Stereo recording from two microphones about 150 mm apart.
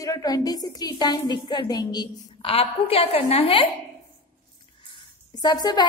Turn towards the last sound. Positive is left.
turn(degrees=30)  # may be behind; listen again after turning